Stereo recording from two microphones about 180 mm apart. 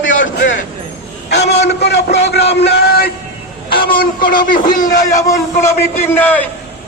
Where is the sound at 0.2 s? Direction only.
90° left.